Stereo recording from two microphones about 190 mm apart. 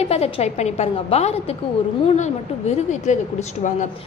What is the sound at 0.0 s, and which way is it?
Speech, 35° left (ahead or behind).